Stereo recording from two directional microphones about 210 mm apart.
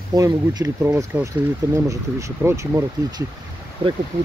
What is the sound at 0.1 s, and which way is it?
Speech, 15° right (ahead or behind).